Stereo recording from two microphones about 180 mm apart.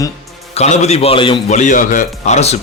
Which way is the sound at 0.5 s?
40° left (ahead or behind).